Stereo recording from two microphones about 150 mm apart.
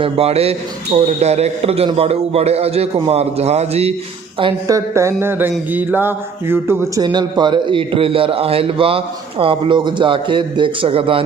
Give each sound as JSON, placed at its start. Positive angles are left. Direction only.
{"t": 0.0, "sound": "a man's voice", "side_deg": -40}
{"t": 4.7, "sound": "music", "side_deg": -20}
{"t": 7.0, "sound": "a man's voice", "side_deg": -30}